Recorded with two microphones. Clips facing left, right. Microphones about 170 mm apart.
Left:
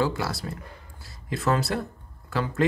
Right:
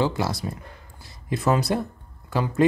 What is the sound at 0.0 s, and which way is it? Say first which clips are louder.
Speech: right 2 dB; 20° right (ahead or behind).